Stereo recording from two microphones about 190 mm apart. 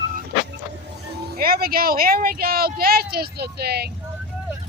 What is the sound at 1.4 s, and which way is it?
Speech, 50° right (ahead or behind).